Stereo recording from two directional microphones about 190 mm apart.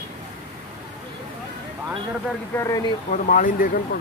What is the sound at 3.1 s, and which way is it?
Speech, 45° left (ahead or behind).